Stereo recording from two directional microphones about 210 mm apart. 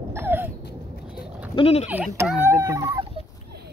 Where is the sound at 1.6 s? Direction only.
30° left (ahead or behind).